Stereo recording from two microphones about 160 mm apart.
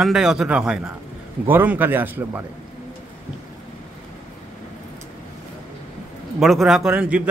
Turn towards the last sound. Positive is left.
turn(degrees=-5)  # may be behind; listen again after turning